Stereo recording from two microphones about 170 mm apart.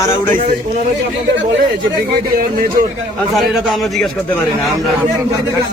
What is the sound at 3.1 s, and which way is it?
A man's voice, centre (ahead or behind).